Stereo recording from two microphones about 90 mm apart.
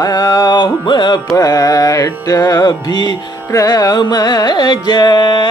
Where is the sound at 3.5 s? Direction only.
45° left (ahead or behind); by 5.4 s 60° left (ahead or behind).